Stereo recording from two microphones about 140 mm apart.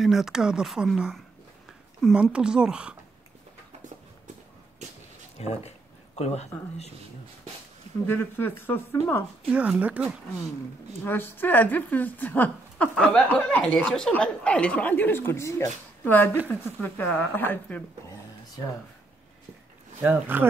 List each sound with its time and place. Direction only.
0.0 s speech: centre (ahead or behind)
5.4 s speech: 50° left (ahead or behind)
8.1 s a woman's voice: 15° left (ahead or behind)
9.5 s speech: 10° right (ahead or behind)
11.1 s a woman's voice: 15° left (ahead or behind)
20.0 s speech: 10° right (ahead or behind)